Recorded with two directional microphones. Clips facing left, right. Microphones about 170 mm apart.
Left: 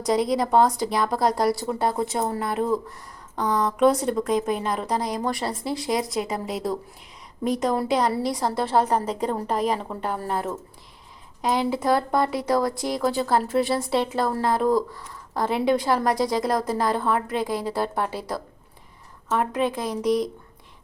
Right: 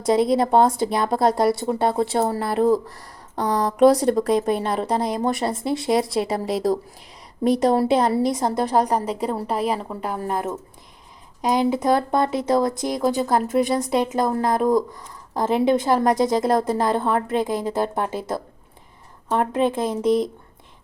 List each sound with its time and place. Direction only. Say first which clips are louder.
0.0 s a woman's voice: right 4 dB; 25° right (ahead or behind)